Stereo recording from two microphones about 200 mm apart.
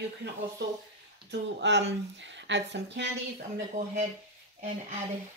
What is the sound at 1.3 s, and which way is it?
Speech, 60° right (ahead or behind).